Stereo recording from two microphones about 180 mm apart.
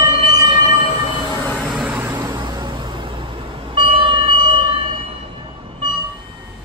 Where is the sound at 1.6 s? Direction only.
10° right (ahead or behind).